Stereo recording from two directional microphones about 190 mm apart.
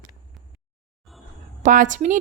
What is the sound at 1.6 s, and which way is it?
Speech, 40° right (ahead or behind).